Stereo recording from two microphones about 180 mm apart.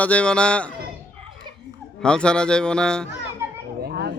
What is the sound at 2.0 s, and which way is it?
Speech, 5° left (ahead or behind).